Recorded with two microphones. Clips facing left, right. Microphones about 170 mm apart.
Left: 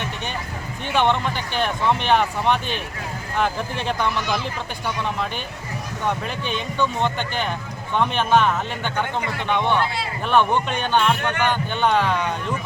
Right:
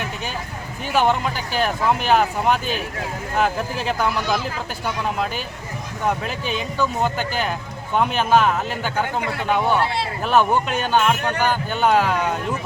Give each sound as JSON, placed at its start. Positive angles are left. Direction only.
{"t": 0.9, "sound": "speech", "side_deg": -5}
{"t": 6.1, "sound": "a man's voice", "side_deg": -5}
{"t": 11.3, "sound": "speech", "side_deg": -35}
{"t": 11.7, "sound": "a man's voice", "side_deg": -5}